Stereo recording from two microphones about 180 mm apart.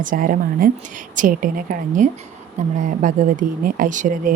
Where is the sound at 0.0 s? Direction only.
50° right (ahead or behind).